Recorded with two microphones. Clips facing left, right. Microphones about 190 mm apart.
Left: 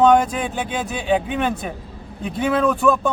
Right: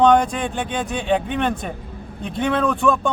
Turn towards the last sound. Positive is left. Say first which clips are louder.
# left 1 dB
turn(degrees=5)  # may be behind; listen again after turning